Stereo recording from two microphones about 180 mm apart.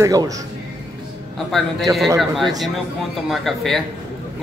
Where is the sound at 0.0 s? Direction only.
20° right (ahead or behind).